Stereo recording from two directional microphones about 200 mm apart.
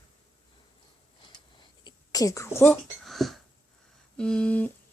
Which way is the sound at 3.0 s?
Centre (ahead or behind).